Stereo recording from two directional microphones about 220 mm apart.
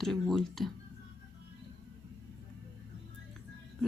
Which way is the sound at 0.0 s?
Centre (ahead or behind).